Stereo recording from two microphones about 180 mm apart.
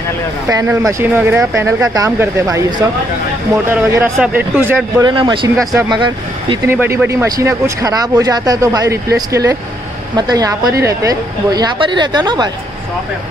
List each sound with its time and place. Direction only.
0.5 s speech: 20° right (ahead or behind)
5.0 s speech: 25° right (ahead or behind)
6.7 s speech: 10° right (ahead or behind)